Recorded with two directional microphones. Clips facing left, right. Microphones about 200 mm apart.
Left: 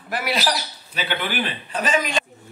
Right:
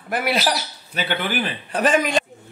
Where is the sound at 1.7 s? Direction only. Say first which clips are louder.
Right 5 dB; 55° right (ahead or behind).